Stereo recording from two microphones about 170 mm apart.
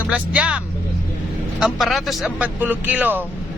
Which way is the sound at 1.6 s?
Centre (ahead or behind).